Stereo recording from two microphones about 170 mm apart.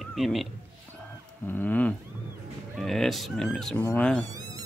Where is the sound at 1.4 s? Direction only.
10° left (ahead or behind).